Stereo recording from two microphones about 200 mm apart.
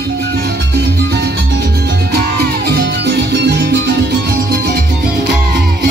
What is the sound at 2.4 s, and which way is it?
Music, 55° right (ahead or behind).